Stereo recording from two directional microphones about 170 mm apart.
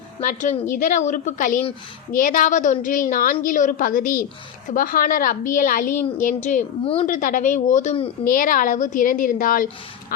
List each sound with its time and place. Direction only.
0.2 s a woman's voice: 50° left (ahead or behind)
6.8 s a woman's voice: 30° left (ahead or behind)
7.1 s a woman's voice: 50° left (ahead or behind)
10.1 s duck: 60° left (ahead or behind)